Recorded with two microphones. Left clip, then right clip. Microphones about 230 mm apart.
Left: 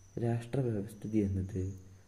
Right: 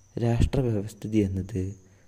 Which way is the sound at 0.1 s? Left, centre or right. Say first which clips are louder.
Right 8 dB; right.